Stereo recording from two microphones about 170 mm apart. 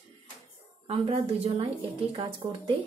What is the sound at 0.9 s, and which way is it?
Speech, 35° right (ahead or behind).